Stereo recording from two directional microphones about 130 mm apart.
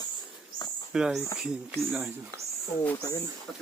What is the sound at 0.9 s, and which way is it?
Speech, 5° right (ahead or behind).